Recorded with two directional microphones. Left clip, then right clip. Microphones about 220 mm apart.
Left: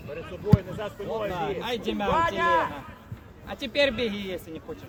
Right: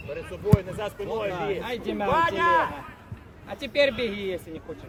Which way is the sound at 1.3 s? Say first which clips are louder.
Even; 50° left (ahead or behind).